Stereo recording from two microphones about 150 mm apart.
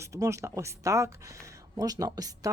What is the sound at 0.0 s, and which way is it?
Speech, 20° right (ahead or behind).